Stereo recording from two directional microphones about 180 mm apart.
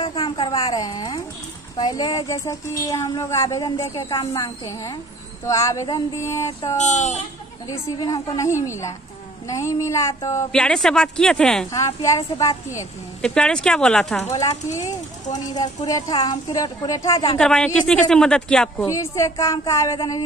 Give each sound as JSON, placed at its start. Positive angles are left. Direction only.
{"t": 0.0, "sound": "speech", "side_deg": 25}
{"t": 6.8, "sound": "speech", "side_deg": 40}
{"t": 7.6, "sound": "speech", "side_deg": 20}
{"t": 10.5, "sound": "speech", "side_deg": 5}
{"t": 11.7, "sound": "speech", "side_deg": 15}
{"t": 13.2, "sound": "speech", "side_deg": 5}
{"t": 14.7, "sound": "a woman's voice", "side_deg": 15}
{"t": 17.4, "sound": "speech", "side_deg": 5}
{"t": 18.9, "sound": "a woman's voice", "side_deg": 15}